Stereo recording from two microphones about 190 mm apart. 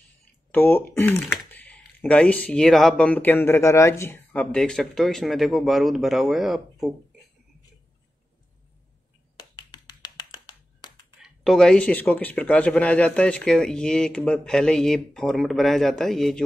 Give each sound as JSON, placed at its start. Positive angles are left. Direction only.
{"t": 0.5, "sound": "speech", "side_deg": 10}
{"t": 9.4, "sound": "tap", "side_deg": 25}
{"t": 11.2, "sound": "speech", "side_deg": 0}